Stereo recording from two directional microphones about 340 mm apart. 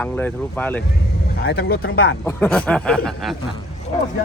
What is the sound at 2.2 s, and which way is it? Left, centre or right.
Speech, centre.